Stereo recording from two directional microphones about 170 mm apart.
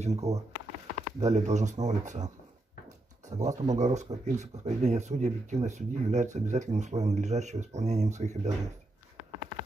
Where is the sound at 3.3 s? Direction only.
45° right (ahead or behind).